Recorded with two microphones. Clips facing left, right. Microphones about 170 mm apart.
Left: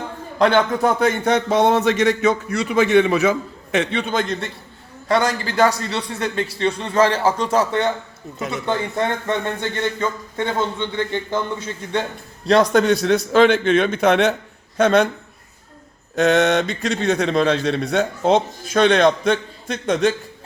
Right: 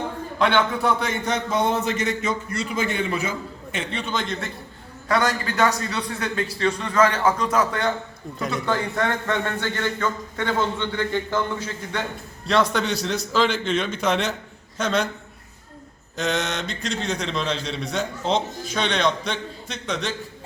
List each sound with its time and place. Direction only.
0.3 s a man's voice: 40° left (ahead or behind)
5.0 s a man's voice: 30° left (ahead or behind)
12.7 s a man's voice: 50° left (ahead or behind)
16.1 s a man's voice: 60° left (ahead or behind)